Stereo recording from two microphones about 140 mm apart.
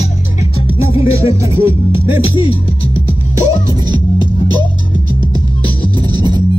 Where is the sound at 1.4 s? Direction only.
15° right (ahead or behind).